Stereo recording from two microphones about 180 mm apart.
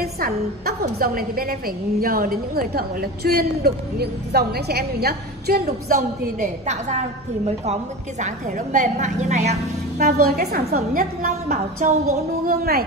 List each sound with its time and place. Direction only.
0.0 s a sound: 60° right (ahead or behind)
0.9 s a woman's voice: 55° right (ahead or behind)
5.9 s a woman's voice: 40° right (ahead or behind)
8.2 s a woman's voice: 45° right (ahead or behind)
9.9 s a woman's voice: 55° right (ahead or behind)
12.4 s a woman's voice: 60° right (ahead or behind)